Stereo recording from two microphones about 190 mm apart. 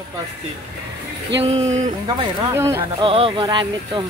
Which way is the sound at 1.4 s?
35° right (ahead or behind).